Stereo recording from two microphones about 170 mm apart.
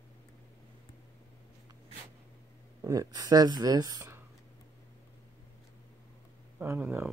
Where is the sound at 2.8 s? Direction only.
20° right (ahead or behind).